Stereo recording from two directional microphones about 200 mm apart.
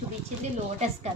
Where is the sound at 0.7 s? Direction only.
35° right (ahead or behind).